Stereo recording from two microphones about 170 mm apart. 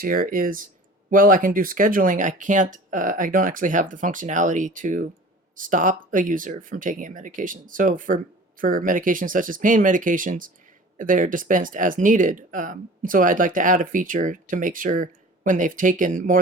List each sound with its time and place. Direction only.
0.0 s speech: 55° right (ahead or behind)